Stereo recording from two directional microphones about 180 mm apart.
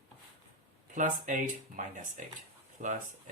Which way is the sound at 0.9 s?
45° right (ahead or behind).